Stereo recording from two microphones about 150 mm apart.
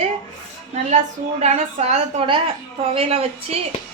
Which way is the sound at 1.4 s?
50° right (ahead or behind).